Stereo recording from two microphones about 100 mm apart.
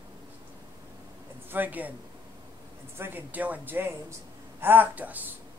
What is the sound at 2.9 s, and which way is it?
A man's voice, 20° right (ahead or behind).